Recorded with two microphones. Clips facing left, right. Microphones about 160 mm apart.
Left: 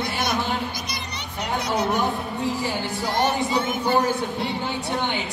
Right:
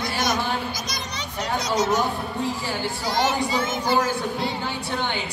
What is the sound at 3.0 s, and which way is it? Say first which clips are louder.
Speech: left 1 dB; 90° right.